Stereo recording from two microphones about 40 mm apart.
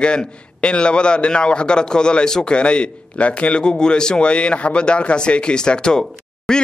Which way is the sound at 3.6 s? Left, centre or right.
Centre.